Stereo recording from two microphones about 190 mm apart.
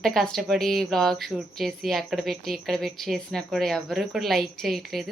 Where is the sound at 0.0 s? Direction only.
Centre (ahead or behind).